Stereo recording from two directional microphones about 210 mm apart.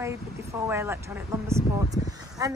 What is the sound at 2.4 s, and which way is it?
Speech, 15° right (ahead or behind).